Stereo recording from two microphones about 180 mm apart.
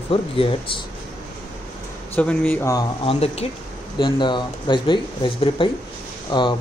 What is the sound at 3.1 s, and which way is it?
Speech, 35° left (ahead or behind).